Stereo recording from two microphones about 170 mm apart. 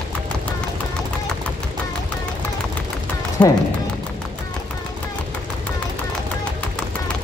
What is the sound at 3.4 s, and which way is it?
Speech, 5° left (ahead or behind).